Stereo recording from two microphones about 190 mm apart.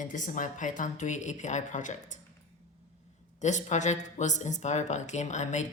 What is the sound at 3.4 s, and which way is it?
Speech, 40° left (ahead or behind).